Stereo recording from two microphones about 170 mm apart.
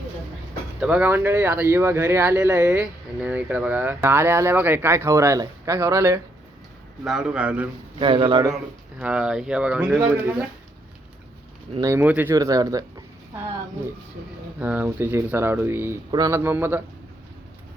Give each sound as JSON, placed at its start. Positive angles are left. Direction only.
{"t": 0.8, "sound": "speech", "side_deg": -5}
{"t": 7.0, "sound": "speech", "side_deg": -5}
{"t": 7.9, "sound": "speech", "side_deg": -30}
{"t": 8.5, "sound": "speech", "side_deg": -5}
{"t": 11.8, "sound": "speech", "side_deg": -15}
{"t": 14.6, "sound": "speech", "side_deg": -10}